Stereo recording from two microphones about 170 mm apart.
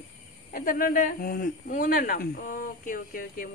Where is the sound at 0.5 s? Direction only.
55° left (ahead or behind).